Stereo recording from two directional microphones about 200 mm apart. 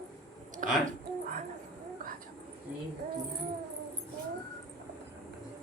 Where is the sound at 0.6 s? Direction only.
40° right (ahead or behind).